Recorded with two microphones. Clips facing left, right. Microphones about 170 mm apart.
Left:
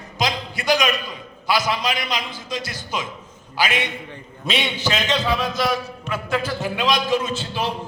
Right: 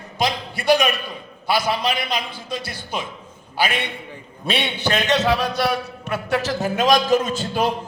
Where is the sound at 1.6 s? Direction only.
60° right (ahead or behind).